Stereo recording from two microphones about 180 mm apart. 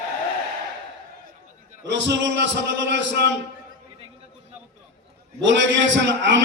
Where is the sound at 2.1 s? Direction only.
80° right.